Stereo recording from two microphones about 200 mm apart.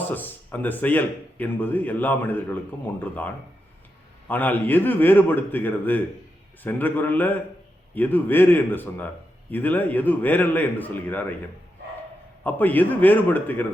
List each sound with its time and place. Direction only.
0.1 s a man's voice: 10° left (ahead or behind)
12.4 s a man's voice: 10° left (ahead or behind)